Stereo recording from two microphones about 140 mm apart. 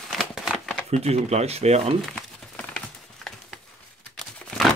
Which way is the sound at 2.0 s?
5° left (ahead or behind).